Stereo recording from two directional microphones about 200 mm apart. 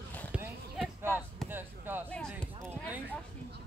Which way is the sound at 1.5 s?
10° right (ahead or behind).